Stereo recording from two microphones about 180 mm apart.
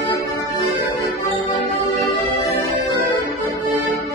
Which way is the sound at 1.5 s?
20° left (ahead or behind).